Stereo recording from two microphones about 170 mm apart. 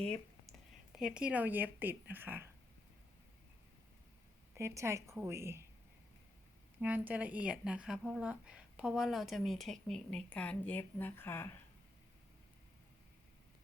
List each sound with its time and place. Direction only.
0.9 s speech: 5° right (ahead or behind)
4.5 s speech: 15° right (ahead or behind)
6.8 s speech: 10° right (ahead or behind); by 11.4 s 15° left (ahead or behind)